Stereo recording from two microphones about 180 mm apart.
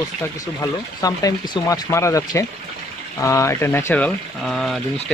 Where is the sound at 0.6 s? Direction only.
20° left (ahead or behind); by 4.7 s centre (ahead or behind).